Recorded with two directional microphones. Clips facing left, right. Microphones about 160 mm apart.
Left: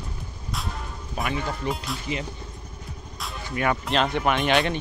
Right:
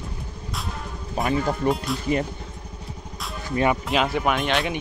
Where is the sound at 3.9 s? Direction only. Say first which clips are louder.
Right 1 dB; 5° right (ahead or behind).